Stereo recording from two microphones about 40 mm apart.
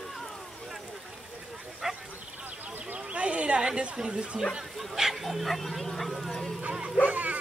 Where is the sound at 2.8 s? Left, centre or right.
Right.